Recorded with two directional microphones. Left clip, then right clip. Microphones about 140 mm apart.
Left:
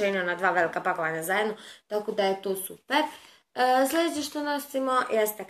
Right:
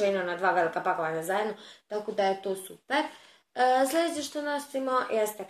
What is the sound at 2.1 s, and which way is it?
Speech, 15° left (ahead or behind).